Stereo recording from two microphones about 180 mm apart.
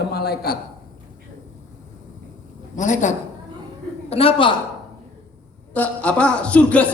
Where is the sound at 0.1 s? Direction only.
60° left (ahead or behind).